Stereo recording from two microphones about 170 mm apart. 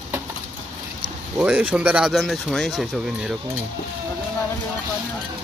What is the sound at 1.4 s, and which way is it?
Speech, 5° right (ahead or behind).